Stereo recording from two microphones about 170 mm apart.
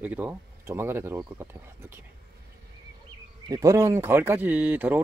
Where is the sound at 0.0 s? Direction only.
10° right (ahead or behind).